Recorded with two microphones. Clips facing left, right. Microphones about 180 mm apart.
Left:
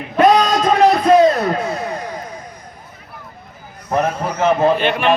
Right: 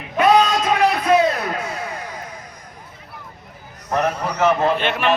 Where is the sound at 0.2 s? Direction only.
40° left (ahead or behind).